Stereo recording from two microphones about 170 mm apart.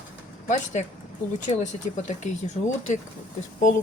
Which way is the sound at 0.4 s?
40° left (ahead or behind).